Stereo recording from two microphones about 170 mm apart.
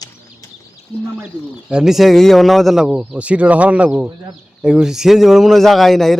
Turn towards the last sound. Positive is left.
turn(degrees=0)  # may be behind; listen again after turning